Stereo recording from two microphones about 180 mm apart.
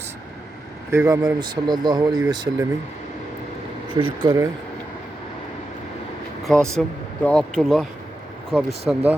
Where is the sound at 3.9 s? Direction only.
25° right (ahead or behind).